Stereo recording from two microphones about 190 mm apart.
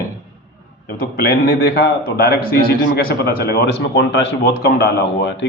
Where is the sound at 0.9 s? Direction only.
50° left (ahead or behind).